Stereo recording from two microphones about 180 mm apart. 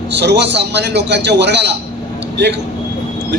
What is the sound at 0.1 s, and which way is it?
A man's voice, 70° right (ahead or behind).